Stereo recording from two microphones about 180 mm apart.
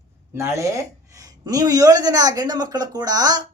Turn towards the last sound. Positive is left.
turn(degrees=-20)  # may be behind; listen again after turning